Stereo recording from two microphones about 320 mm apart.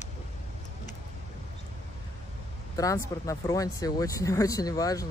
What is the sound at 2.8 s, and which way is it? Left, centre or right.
Speech, centre.